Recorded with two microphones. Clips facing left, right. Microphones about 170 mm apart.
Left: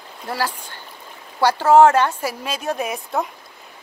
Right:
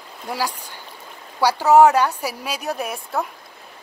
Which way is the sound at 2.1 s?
10° right (ahead or behind).